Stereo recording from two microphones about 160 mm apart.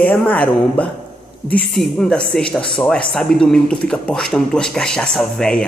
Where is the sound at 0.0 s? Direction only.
10° left (ahead or behind).